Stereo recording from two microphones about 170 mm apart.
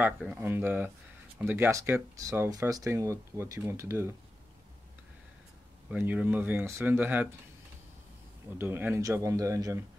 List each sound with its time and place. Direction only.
0.2 s speech: 10° right (ahead or behind)
5.9 s speech: 10° right (ahead or behind)
8.5 s speech: 10° right (ahead or behind)